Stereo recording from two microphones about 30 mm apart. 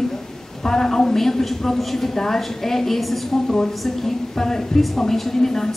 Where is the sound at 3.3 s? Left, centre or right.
Centre.